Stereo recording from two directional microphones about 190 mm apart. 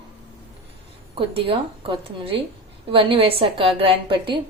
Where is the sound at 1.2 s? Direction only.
30° right (ahead or behind).